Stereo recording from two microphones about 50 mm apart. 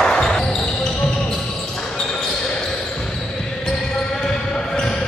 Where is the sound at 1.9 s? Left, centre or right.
Centre.